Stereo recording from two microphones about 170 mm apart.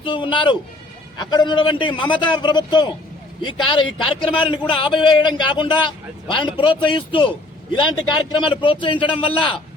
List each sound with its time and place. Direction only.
0.0 s a man's voice: 30° left (ahead or behind)